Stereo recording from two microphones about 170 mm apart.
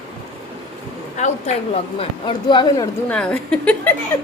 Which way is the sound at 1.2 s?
40° left (ahead or behind).